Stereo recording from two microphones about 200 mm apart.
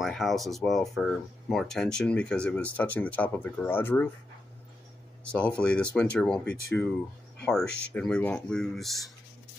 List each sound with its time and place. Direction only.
0.0 s speech: centre (ahead or behind)
5.2 s speech: 5° left (ahead or behind)